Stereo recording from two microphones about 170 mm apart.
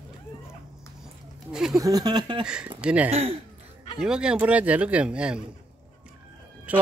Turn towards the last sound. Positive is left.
turn(degrees=-10)  # may be behind; listen again after turning